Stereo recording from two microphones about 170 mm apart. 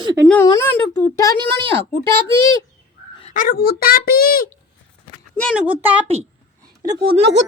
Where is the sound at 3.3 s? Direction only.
60° left (ahead or behind).